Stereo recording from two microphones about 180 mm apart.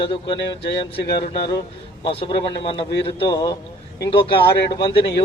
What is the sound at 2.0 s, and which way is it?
A man's voice, 30° left (ahead or behind).